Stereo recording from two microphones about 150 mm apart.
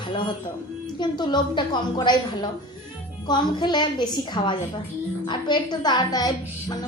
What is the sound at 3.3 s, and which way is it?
A woman's voice, 30° left (ahead or behind).